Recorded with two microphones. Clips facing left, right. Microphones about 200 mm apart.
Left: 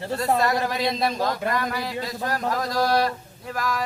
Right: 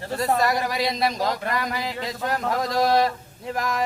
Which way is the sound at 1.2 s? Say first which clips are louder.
Left 1 dB; 15° right (ahead or behind).